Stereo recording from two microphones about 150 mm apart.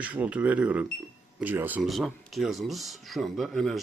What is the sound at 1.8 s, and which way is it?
Speech, centre (ahead or behind).